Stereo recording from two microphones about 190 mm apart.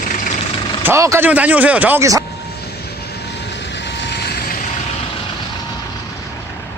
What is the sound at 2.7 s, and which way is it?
Vehicle, 60° left (ahead or behind).